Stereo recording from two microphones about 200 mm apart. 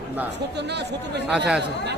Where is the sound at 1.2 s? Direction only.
5° right (ahead or behind).